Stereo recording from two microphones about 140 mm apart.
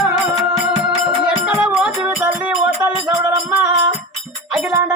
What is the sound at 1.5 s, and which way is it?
Music, 10° right (ahead or behind).